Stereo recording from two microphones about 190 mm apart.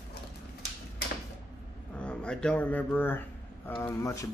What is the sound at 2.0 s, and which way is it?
A man's voice, 5° left (ahead or behind).